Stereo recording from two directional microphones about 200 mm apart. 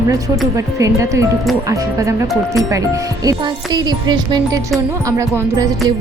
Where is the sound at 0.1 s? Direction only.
15° right (ahead or behind).